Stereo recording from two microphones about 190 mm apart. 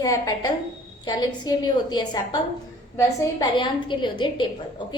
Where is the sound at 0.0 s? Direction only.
20° left (ahead or behind).